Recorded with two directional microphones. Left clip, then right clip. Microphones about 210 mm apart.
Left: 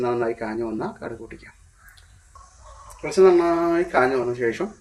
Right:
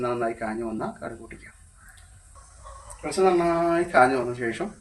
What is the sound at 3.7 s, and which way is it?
Speech, 15° left (ahead or behind).